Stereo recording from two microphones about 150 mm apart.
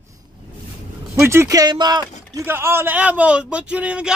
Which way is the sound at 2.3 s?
15° right (ahead or behind).